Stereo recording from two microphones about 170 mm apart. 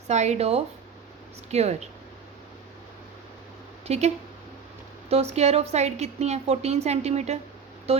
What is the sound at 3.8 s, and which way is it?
A woman's voice, 40° right (ahead or behind).